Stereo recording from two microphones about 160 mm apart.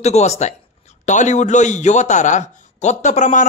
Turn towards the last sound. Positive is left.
turn(degrees=50)  # may be behind; listen again after turning